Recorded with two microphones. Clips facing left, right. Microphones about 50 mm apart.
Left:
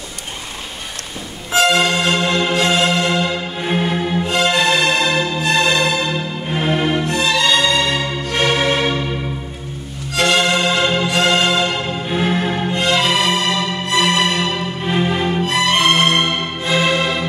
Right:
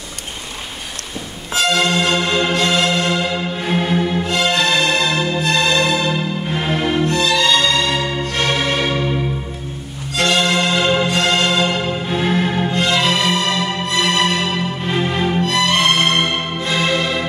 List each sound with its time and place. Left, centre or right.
1.5 s music: centre
1.8 s music: centre
2.5 s music: centre
7.1 s music: centre
10.1 s music: centre
12.7 s music: centre
15.4 s music: centre